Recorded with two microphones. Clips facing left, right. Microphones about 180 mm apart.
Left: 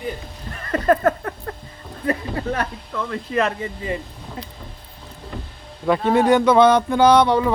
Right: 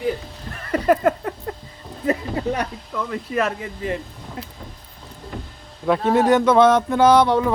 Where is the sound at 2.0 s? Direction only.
20° right (ahead or behind).